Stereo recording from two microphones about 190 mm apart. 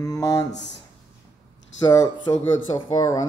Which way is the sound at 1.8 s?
25° left (ahead or behind).